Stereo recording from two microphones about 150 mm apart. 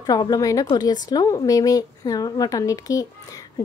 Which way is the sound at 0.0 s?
25° left (ahead or behind).